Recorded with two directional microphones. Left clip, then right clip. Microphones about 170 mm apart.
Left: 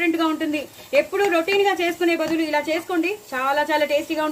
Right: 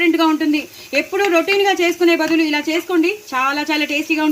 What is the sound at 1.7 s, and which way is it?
Speech, 45° right (ahead or behind).